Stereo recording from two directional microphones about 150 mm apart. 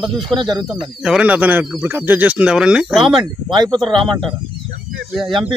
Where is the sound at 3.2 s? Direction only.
30° right (ahead or behind).